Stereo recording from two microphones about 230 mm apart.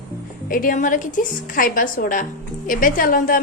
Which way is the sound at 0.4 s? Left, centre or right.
Left.